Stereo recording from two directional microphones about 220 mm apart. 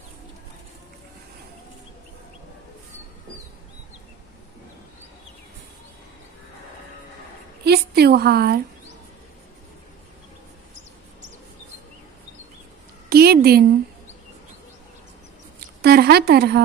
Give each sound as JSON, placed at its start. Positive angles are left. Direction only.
{"t": 7.6, "sound": "a woman's voice", "side_deg": -45}
{"t": 13.1, "sound": "a sound", "side_deg": -45}
{"t": 15.8, "sound": "a woman's voice", "side_deg": -45}